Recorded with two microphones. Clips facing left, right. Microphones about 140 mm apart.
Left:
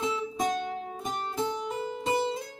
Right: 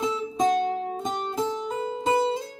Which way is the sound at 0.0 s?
20° right (ahead or behind).